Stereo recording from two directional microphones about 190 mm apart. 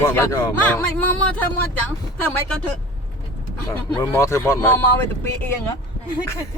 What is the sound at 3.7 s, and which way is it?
Speech, 10° left (ahead or behind).